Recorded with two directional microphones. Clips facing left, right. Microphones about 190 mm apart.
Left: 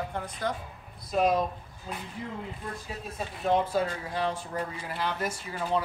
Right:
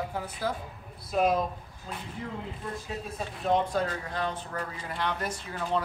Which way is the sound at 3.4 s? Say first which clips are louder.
Left 1 dB; 5° left (ahead or behind).